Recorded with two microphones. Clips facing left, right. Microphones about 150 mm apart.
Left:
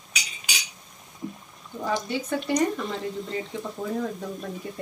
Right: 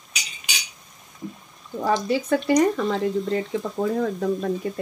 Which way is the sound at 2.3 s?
75° right (ahead or behind).